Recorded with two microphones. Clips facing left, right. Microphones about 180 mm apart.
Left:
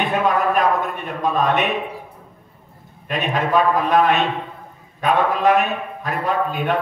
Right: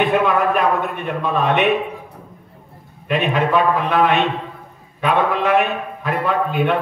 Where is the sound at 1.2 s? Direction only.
40° left (ahead or behind).